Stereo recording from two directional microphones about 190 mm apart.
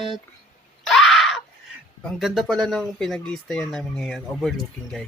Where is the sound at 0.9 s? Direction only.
Centre (ahead or behind).